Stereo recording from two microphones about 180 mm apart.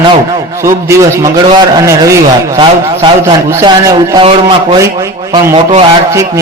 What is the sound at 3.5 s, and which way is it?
A man's voice, 15° right (ahead or behind).